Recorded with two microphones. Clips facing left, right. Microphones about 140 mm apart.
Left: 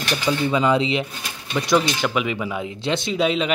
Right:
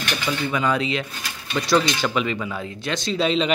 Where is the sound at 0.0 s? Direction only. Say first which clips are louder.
Left 4 dB; 30° left (ahead or behind).